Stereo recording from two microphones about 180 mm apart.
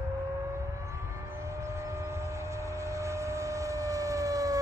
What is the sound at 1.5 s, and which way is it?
Vehicle, 15° right (ahead or behind).